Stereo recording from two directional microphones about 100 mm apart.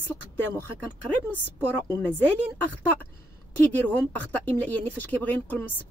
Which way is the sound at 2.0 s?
20° left (ahead or behind).